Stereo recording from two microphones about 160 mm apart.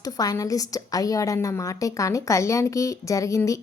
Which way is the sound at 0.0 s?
20° left (ahead or behind).